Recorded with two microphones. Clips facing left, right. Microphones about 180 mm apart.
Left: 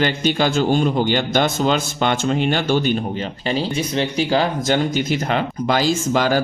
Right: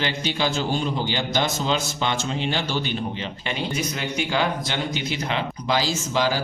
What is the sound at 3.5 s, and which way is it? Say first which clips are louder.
A man's voice: left 6 dB; 30° left (ahead or behind).